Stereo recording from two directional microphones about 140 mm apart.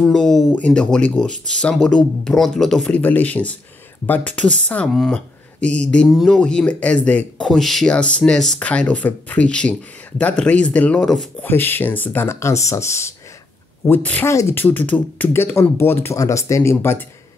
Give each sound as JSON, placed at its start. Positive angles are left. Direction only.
{"t": 0.0, "sound": "speech", "side_deg": 5}
{"t": 11.4, "sound": "speech", "side_deg": 15}